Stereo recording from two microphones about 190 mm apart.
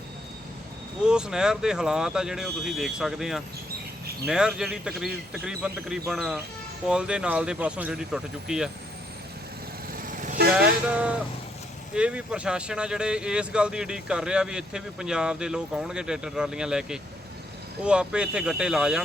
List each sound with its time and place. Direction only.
1.0 s speech: 5° right (ahead or behind)
9.9 s vehicle: 45° right (ahead or behind)
10.5 s vehicle: 5° right (ahead or behind)
11.9 s speech: 5° right (ahead or behind)